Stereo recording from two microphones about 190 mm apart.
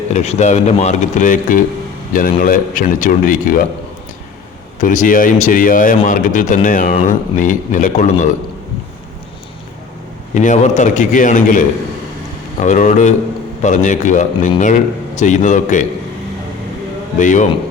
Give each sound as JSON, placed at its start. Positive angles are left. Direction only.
{"t": 0.1, "sound": "speech", "side_deg": 35}
{"t": 4.8, "sound": "speech", "side_deg": 45}
{"t": 10.3, "sound": "speech", "side_deg": 40}
{"t": 17.2, "sound": "speech", "side_deg": 40}